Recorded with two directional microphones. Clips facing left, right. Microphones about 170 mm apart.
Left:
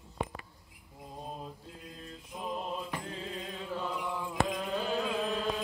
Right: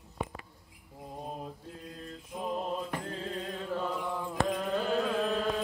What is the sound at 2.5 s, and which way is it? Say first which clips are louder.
Mantra: right 3 dB; 40° right (ahead or behind).